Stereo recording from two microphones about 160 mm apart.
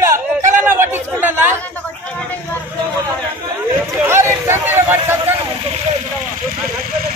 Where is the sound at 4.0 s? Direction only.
15° right (ahead or behind).